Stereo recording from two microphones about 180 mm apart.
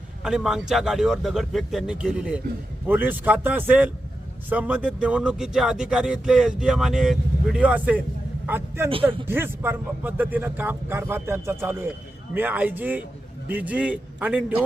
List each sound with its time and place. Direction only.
0.2 s a man's voice: 5° right (ahead or behind)